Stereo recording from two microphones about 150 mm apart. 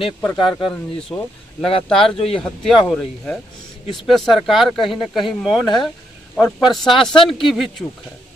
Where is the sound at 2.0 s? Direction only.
40° left (ahead or behind).